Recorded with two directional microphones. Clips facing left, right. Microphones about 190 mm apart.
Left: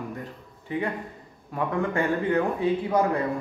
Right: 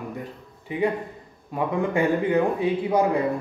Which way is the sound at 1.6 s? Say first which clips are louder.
Right 3 dB; 15° right (ahead or behind).